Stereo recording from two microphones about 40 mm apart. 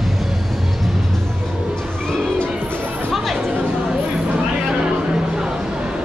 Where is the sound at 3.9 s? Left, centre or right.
Right.